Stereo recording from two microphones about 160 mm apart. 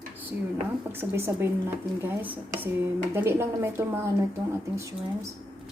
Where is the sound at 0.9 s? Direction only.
15° right (ahead or behind).